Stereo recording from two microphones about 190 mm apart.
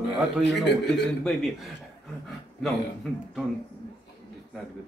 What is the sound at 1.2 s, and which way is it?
Speech, centre (ahead or behind).